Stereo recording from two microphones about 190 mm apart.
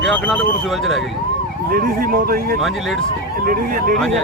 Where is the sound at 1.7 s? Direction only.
50° right (ahead or behind).